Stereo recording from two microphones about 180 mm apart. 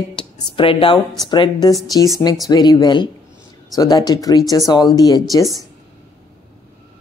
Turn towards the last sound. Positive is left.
turn(degrees=20)  # may be behind; listen again after turning